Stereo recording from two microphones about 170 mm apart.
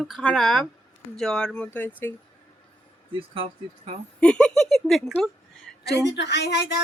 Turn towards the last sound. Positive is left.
turn(degrees=80)